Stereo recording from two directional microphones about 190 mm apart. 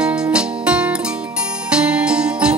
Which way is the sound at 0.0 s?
5° right (ahead or behind).